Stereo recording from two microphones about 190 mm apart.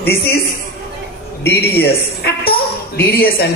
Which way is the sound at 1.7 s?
55° left (ahead or behind).